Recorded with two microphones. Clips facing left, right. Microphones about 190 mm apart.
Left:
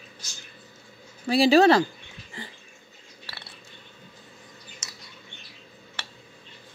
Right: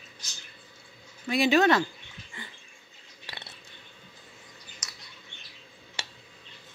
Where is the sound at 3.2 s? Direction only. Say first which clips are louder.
Right 1 dB; 20° right (ahead or behind).